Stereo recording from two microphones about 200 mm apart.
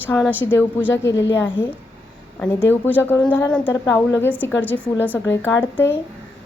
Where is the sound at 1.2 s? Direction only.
65° left (ahead or behind).